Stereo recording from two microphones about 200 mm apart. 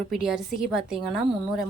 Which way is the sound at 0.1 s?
Centre (ahead or behind).